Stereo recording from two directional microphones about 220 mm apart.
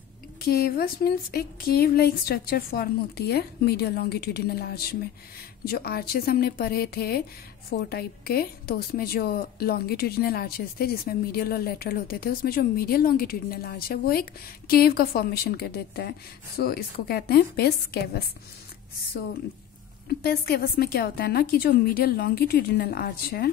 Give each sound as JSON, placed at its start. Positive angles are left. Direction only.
{"t": 0.4, "sound": "a woman's voice", "side_deg": 45}
{"t": 20.1, "sound": "a woman's voice", "side_deg": 45}